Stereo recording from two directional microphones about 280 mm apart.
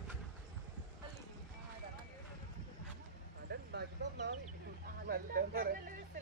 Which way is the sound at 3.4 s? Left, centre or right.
Right.